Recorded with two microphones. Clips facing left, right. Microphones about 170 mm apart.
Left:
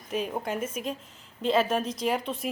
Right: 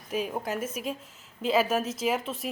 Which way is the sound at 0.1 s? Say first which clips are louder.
Even; 5° right (ahead or behind).